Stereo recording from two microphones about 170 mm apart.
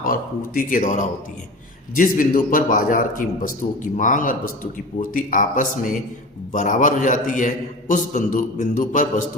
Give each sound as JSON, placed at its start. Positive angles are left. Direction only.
{"t": 0.0, "sound": "a man's voice", "side_deg": 55}